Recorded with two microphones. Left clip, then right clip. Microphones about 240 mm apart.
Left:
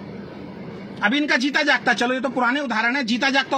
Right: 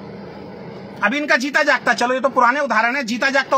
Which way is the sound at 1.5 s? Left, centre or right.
Right.